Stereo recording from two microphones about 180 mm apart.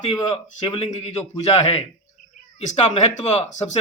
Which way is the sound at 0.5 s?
35° left (ahead or behind).